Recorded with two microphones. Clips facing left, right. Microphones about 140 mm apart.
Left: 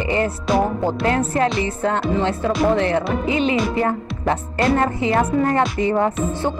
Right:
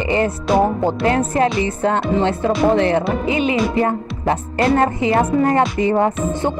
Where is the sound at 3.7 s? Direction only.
25° right (ahead or behind).